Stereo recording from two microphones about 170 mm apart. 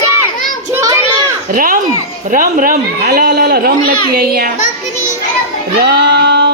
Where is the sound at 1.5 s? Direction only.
55° right (ahead or behind).